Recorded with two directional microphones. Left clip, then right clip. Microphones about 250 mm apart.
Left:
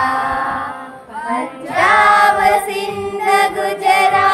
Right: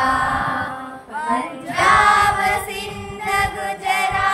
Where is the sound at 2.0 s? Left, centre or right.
Centre.